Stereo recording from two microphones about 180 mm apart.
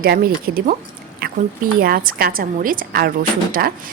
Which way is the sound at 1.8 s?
50° right (ahead or behind).